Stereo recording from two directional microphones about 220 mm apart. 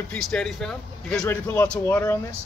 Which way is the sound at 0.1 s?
5° left (ahead or behind).